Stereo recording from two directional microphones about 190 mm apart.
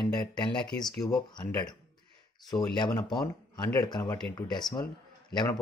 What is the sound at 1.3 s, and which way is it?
A man's voice, 20° left (ahead or behind).